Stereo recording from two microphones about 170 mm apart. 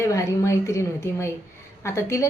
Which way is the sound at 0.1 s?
15° left (ahead or behind).